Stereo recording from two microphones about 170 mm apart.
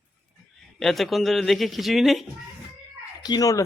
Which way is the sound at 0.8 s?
Centre (ahead or behind).